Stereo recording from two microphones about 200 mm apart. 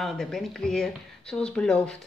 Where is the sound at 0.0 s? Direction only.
Centre (ahead or behind).